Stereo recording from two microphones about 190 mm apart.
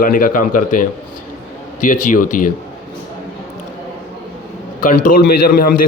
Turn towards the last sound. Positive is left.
turn(degrees=50)  # may be behind; listen again after turning